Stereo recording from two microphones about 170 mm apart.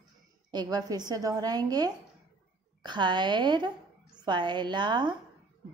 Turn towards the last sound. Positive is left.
turn(degrees=-25)  # may be behind; listen again after turning